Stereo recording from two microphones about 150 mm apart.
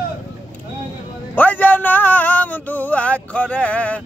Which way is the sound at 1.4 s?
10° left (ahead or behind).